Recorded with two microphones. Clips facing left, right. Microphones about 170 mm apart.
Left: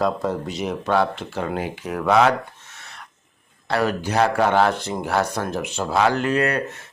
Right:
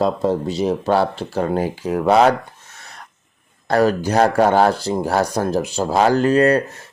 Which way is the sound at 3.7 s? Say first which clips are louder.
Right 6 dB; 40° right (ahead or behind).